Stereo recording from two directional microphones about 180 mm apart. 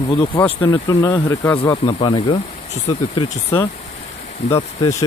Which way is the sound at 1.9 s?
30° left (ahead or behind).